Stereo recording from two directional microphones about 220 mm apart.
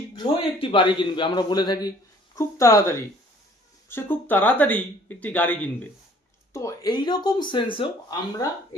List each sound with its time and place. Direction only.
0.2 s speech: 20° left (ahead or behind)